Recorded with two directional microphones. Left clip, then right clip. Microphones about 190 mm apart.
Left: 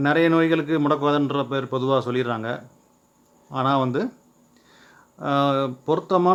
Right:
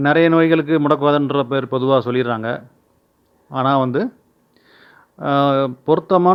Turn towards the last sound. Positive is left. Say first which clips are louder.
# right 6 dB
turn(degrees=-30)  # may be behind; listen again after turning